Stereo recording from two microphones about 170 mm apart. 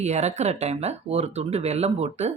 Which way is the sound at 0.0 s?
40° right (ahead or behind).